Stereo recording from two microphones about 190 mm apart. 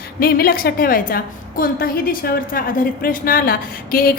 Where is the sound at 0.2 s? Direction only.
50° left (ahead or behind).